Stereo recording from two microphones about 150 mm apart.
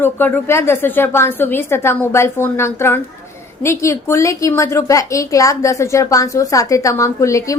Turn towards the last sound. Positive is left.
turn(degrees=20)  # may be behind; listen again after turning